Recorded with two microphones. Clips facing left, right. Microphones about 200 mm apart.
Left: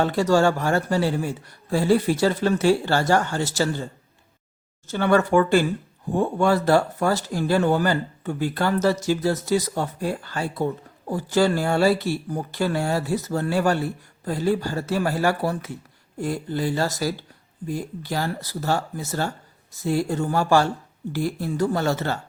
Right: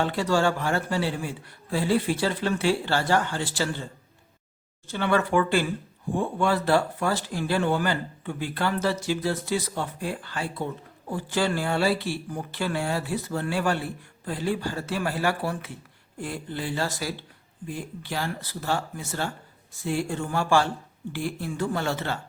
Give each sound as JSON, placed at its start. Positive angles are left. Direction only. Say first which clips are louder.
{"t": 0.0, "sound": "speech", "louder": "left 5 dB", "side_deg": 40}
{"t": 4.9, "sound": "speech", "louder": "left 5 dB", "side_deg": 45}